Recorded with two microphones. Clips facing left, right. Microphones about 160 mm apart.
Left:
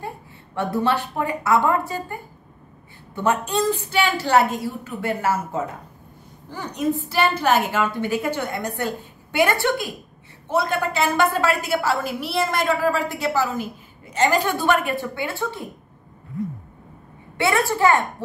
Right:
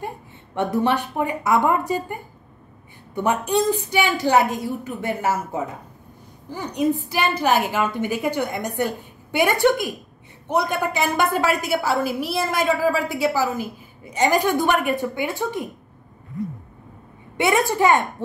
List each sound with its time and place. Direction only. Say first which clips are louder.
0.6 s a woman's voice: right 1 dB; 20° right (ahead or behind)
3.2 s a woman's voice: right 1 dB; 15° right (ahead or behind)
17.4 s a woman's voice: right 1 dB; 15° right (ahead or behind)